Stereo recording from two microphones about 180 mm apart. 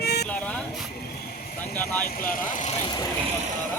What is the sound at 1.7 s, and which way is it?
Speech, 10° left (ahead or behind).